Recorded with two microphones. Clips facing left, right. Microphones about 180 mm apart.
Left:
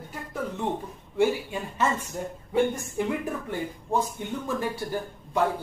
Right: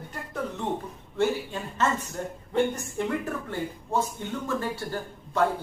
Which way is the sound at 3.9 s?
15° left (ahead or behind).